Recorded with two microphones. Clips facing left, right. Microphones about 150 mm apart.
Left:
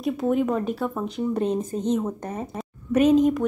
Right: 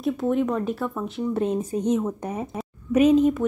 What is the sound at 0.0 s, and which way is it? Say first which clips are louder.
A woman's voice: even; centre (ahead or behind).